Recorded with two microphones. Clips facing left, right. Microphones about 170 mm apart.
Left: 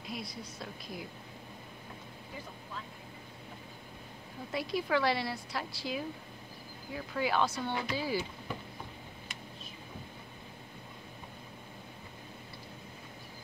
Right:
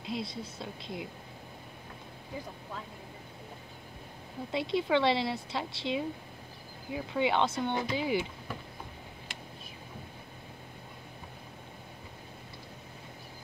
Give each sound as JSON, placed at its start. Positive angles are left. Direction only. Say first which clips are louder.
{"t": 0.0, "sound": "a woman's voice", "louder": "right 5 dB", "side_deg": -25}
{"t": 4.5, "sound": "a woman's voice", "louder": "right 3 dB", "side_deg": -25}